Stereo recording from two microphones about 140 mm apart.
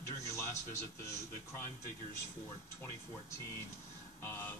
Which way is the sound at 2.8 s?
20° left (ahead or behind).